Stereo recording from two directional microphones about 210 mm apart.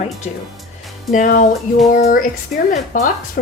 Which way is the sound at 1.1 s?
35° left (ahead or behind).